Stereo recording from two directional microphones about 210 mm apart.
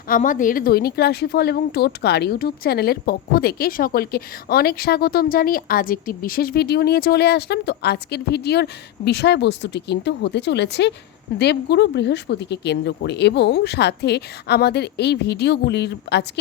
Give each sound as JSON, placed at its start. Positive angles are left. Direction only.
{"t": 0.1, "sound": "a woman's voice", "side_deg": 40}